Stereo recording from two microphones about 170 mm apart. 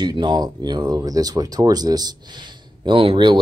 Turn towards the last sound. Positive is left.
turn(degrees=-30)  # may be behind; listen again after turning